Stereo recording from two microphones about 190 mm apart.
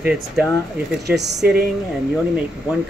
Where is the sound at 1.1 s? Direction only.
60° right (ahead or behind).